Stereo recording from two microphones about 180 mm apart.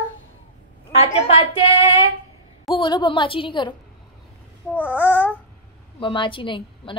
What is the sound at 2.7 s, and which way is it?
A woman's voice, 25° left (ahead or behind).